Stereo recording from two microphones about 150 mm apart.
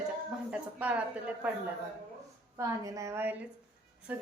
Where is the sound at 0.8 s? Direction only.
10° right (ahead or behind).